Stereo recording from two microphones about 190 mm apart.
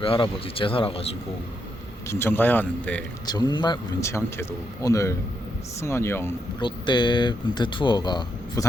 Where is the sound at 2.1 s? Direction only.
10° left (ahead or behind).